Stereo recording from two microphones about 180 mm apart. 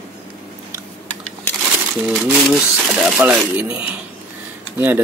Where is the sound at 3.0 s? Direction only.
5° right (ahead or behind).